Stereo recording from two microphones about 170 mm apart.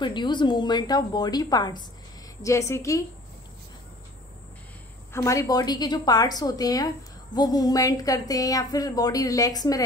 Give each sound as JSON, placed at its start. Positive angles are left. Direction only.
{"t": 0.0, "sound": "a woman's voice", "side_deg": 25}
{"t": 5.1, "sound": "a woman's voice", "side_deg": 15}